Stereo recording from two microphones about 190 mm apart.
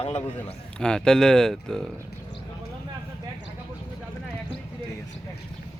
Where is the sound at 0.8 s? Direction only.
5° left (ahead or behind).